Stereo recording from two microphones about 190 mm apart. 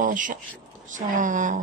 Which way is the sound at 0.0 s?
45° right (ahead or behind).